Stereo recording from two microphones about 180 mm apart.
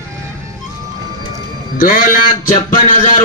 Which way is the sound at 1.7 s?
50° left (ahead or behind).